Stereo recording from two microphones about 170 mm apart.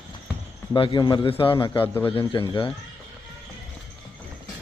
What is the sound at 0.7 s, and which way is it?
A man's voice, 30° left (ahead or behind).